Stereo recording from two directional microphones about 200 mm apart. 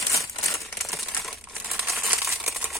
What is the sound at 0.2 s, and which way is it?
Crumpling, centre (ahead or behind).